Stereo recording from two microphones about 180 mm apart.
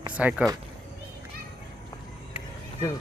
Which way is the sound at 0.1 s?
10° right (ahead or behind).